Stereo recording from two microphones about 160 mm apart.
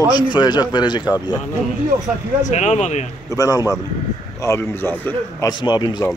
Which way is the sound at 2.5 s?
45° left (ahead or behind).